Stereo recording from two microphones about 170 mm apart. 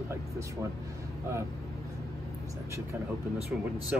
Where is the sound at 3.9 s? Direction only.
5° right (ahead or behind).